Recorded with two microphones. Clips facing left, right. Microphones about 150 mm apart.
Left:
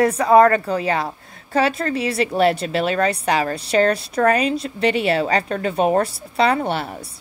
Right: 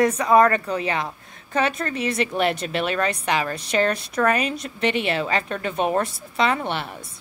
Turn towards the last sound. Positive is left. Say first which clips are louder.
# left 4 dB
turn(degrees=40)  # may be behind; listen again after turning